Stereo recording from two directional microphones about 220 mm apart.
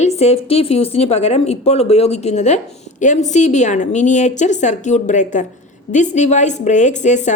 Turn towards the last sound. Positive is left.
turn(degrees=35)  # may be behind; listen again after turning